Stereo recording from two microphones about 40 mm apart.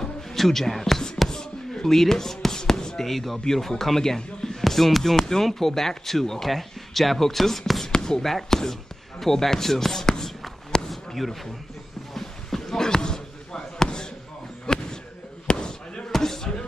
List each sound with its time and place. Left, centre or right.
0.0 s basketball bounce: centre
3.1 s speech: centre
7.8 s a sound: centre
9.2 s speech: centre
10.9 s a sound: centre
12.1 s basketball bounce: centre
14.7 s a sound: left
15.4 s slam: left
16.1 s basketball bounce: centre